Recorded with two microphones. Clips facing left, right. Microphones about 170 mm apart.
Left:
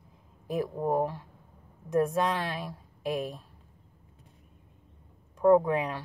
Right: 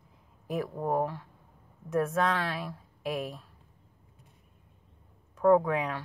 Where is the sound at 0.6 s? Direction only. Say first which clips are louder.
Left 1 dB; 15° left (ahead or behind).